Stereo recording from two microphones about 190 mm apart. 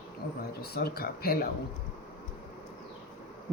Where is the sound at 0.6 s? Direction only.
55° left (ahead or behind).